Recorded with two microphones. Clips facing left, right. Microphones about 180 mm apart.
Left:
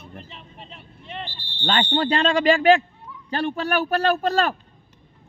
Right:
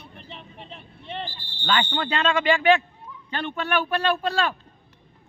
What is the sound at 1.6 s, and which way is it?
Speech, 35° left (ahead or behind).